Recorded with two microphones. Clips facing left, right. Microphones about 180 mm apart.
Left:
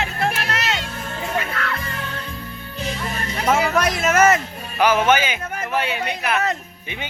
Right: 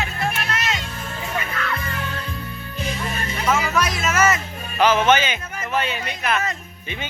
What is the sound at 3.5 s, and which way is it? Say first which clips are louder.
Music: left 4 dB; 55° left (ahead or behind).